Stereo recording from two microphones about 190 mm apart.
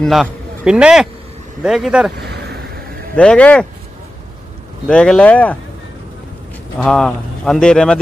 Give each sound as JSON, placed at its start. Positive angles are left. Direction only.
{"t": 0.0, "sound": "a man's voice", "side_deg": 0}
{"t": 3.2, "sound": "speech", "side_deg": 5}
{"t": 4.8, "sound": "speech", "side_deg": 5}
{"t": 6.8, "sound": "speech", "side_deg": 5}